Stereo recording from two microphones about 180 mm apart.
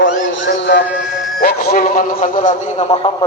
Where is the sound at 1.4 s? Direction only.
50° left (ahead or behind).